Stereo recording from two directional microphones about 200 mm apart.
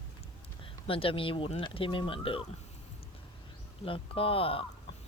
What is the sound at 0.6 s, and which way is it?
Speech, 25° left (ahead or behind).